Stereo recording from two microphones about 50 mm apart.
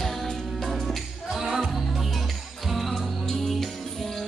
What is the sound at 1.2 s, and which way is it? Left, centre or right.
Music, centre.